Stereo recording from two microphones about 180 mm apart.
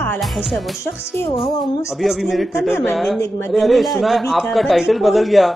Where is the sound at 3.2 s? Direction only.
15° left (ahead or behind).